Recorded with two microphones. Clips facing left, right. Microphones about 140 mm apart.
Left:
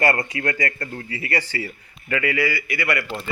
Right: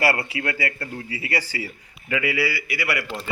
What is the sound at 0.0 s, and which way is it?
Speech, 10° right (ahead or behind).